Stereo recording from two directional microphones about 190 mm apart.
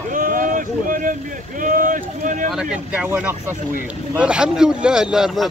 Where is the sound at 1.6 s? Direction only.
45° right (ahead or behind).